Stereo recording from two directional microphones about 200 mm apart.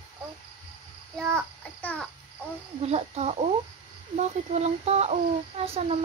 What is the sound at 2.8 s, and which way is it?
Speech, 30° right (ahead or behind).